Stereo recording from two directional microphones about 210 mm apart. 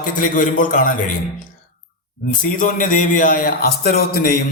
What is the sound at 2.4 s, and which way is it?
A man's voice, 40° left (ahead or behind).